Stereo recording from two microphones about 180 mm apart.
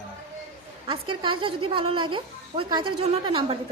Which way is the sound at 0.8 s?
25° right (ahead or behind).